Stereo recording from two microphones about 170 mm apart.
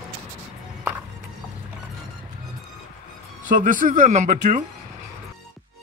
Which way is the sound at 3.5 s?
50° right (ahead or behind).